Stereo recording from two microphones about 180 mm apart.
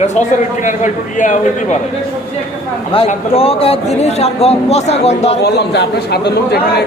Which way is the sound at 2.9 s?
30° left (ahead or behind).